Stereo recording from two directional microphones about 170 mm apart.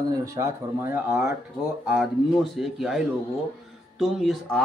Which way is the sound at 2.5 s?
Centre (ahead or behind).